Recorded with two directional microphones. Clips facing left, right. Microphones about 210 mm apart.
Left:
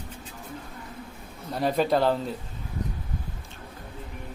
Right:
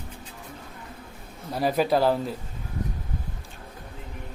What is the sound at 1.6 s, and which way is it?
Speech, 5° right (ahead or behind).